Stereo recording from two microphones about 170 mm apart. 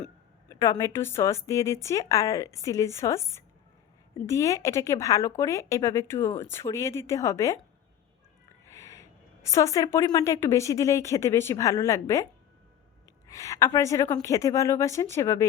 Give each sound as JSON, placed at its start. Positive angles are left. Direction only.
{"t": 0.4, "sound": "a woman's voice", "side_deg": 20}
{"t": 8.7, "sound": "a woman's voice", "side_deg": 20}